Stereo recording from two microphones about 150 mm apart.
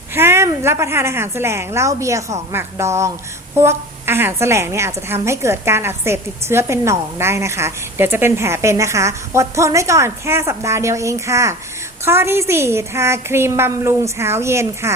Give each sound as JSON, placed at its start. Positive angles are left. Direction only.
{"t": 0.1, "sound": "a woman's voice", "side_deg": -15}